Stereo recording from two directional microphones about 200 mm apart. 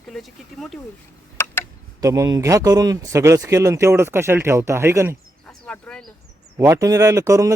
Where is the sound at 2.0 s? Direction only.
15° right (ahead or behind).